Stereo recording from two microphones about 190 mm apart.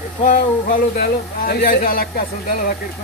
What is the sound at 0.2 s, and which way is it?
Speech, 45° left (ahead or behind).